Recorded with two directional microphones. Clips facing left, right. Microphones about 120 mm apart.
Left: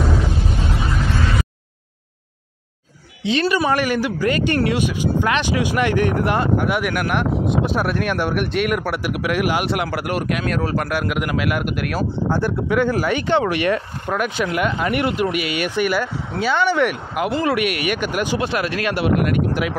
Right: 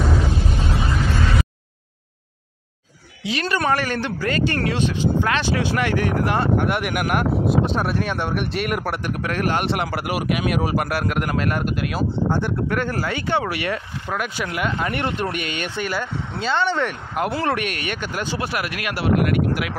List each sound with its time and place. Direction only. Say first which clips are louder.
3.4 s speech: left 1 dB; 10° left (ahead or behind)
6.6 s speech: left 2 dB; centre (ahead or behind)
6.9 s speech: left 1 dB; 10° right (ahead or behind)
10.9 s speech: left 1 dB; centre (ahead or behind)
12.6 s speech: left 5 dB; 10° left (ahead or behind)
14.9 s speech: left 4 dB; 10° left (ahead or behind)